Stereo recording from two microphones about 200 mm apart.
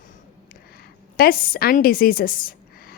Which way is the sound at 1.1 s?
45° left (ahead or behind).